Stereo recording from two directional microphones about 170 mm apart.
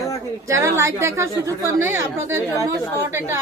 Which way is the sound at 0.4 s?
15° right (ahead or behind).